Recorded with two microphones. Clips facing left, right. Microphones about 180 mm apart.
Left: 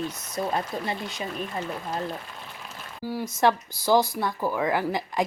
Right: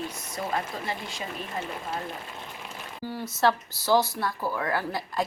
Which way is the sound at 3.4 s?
15° left (ahead or behind).